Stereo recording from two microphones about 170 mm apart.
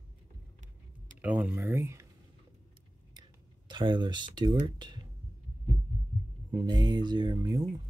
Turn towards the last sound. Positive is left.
turn(degrees=-20)  # may be behind; listen again after turning